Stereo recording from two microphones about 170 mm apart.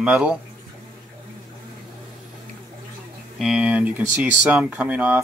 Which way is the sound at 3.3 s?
5° right (ahead or behind).